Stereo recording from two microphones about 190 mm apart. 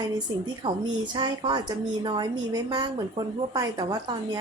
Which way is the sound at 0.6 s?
25° right (ahead or behind).